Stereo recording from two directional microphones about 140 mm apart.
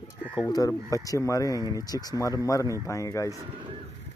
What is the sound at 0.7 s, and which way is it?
Speech, 25° left (ahead or behind).